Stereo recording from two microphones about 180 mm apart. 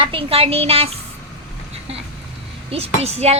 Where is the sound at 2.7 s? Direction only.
35° right (ahead or behind).